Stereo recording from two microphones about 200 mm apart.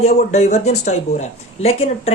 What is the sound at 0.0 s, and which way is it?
Speech, 35° left (ahead or behind).